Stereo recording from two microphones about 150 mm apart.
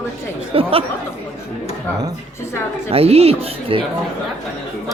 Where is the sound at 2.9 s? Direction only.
40° right (ahead or behind).